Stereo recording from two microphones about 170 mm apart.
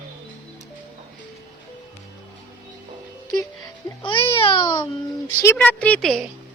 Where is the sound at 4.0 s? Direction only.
30° left (ahead or behind).